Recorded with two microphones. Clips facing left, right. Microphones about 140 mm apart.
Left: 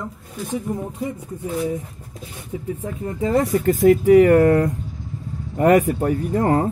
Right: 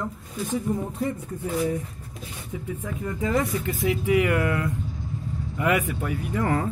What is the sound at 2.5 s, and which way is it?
Speech, 35° left (ahead or behind).